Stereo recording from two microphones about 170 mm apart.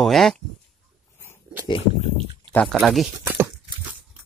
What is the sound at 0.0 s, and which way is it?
Speech, centre (ahead or behind).